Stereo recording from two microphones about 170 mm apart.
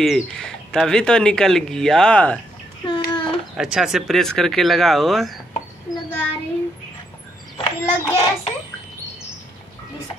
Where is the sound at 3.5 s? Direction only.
5° right (ahead or behind).